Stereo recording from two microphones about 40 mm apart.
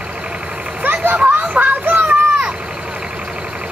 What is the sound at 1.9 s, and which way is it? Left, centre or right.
Children playing, right.